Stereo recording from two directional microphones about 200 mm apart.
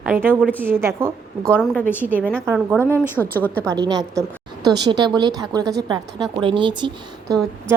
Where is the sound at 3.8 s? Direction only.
20° right (ahead or behind).